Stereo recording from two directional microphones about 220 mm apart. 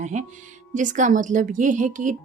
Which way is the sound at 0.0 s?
35° right (ahead or behind).